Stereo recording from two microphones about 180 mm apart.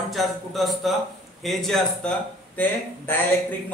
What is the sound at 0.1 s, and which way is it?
A man's voice, centre (ahead or behind).